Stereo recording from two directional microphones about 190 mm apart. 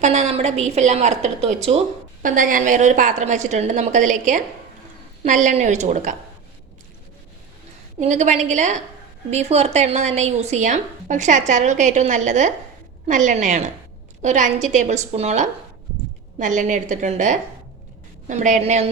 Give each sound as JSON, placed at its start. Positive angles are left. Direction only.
{"t": 0.0, "sound": "a woman's voice", "side_deg": -35}
{"t": 7.9, "sound": "a woman's voice", "side_deg": -40}